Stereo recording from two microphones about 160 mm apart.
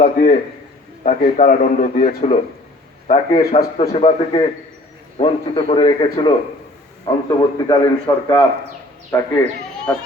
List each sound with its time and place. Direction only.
0.0 s a man's voice: 55° left (ahead or behind); by 9.3 s 15° left (ahead or behind)